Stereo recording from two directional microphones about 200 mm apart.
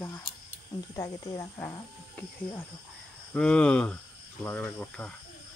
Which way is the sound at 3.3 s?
5° left (ahead or behind).